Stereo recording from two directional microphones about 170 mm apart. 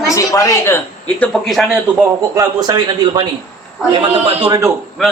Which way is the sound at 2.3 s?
20° right (ahead or behind).